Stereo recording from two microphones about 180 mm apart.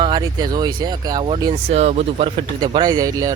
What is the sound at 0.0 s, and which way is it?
Speech, 25° right (ahead or behind).